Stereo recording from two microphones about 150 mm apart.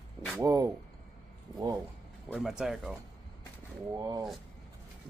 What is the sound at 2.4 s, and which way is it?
Speech, centre (ahead or behind).